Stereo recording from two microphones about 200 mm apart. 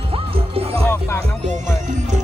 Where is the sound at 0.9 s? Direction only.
10° left (ahead or behind).